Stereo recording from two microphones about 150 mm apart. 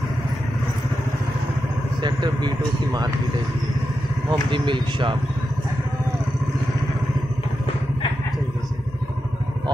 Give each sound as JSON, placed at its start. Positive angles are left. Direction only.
{"t": 2.0, "sound": "speech", "side_deg": -30}
{"t": 4.3, "sound": "speech", "side_deg": -30}